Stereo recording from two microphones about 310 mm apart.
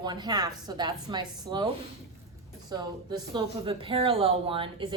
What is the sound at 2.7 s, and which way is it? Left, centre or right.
A woman's voice, centre.